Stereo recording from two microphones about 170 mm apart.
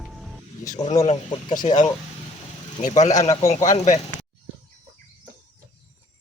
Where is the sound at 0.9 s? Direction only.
40° left (ahead or behind).